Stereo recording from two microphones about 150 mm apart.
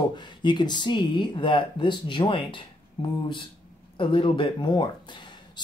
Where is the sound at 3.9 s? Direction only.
35° left (ahead or behind).